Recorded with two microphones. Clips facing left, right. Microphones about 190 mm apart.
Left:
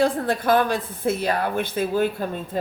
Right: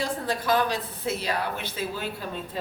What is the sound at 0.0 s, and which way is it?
A woman's voice, 55° left (ahead or behind).